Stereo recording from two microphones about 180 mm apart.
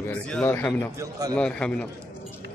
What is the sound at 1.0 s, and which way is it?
Speech, 20° right (ahead or behind).